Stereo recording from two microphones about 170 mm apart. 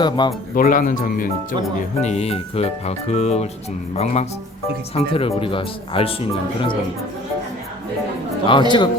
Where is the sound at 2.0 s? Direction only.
40° left (ahead or behind).